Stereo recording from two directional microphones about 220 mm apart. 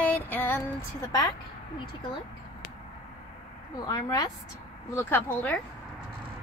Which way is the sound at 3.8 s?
15° left (ahead or behind).